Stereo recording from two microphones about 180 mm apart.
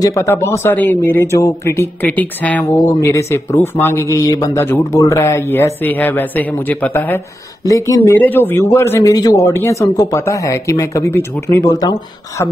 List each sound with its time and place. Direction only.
0.0 s speech: 15° left (ahead or behind)